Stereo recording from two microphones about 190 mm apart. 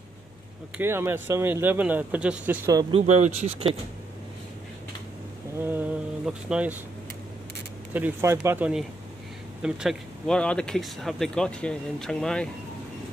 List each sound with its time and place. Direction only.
0.7 s speech: 15° right (ahead or behind)
2.9 s speech: 35° right (ahead or behind)
5.6 s speech: 10° right (ahead or behind)
7.9 s speech: 10° right (ahead or behind)